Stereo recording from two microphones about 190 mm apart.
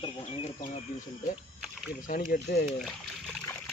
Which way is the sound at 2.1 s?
50° left (ahead or behind).